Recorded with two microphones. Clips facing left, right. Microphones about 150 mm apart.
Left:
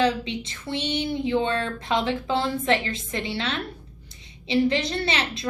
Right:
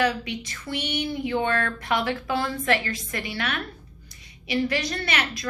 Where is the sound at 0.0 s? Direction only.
25° left (ahead or behind).